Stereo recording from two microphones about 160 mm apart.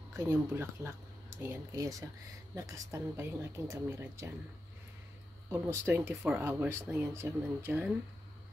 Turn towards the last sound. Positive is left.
turn(degrees=-15)  # may be behind; listen again after turning